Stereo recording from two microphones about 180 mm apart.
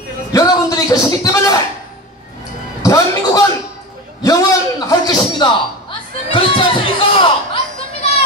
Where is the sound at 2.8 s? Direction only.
15° left (ahead or behind).